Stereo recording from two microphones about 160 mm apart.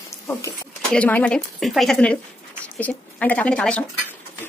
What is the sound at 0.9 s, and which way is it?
A woman's voice, 10° left (ahead or behind).